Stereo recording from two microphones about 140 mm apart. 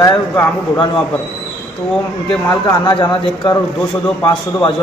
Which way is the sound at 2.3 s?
30° left (ahead or behind).